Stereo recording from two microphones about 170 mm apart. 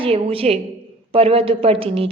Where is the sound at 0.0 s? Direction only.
35° right (ahead or behind).